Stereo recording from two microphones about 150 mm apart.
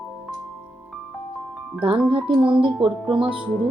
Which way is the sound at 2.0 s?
35° right (ahead or behind).